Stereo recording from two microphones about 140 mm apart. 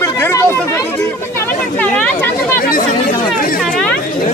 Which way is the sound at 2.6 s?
80° left.